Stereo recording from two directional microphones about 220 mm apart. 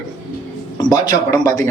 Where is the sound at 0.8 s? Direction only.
15° left (ahead or behind).